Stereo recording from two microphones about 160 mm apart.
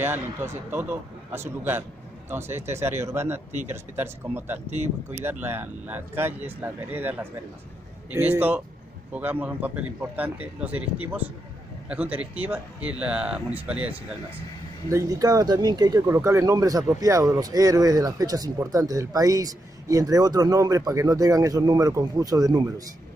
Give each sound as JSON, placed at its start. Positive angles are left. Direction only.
{"t": 0.0, "sound": "a man's voice", "side_deg": -15}
{"t": 14.9, "sound": "speech", "side_deg": -20}